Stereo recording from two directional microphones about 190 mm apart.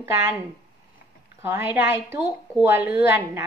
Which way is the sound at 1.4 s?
10° right (ahead or behind).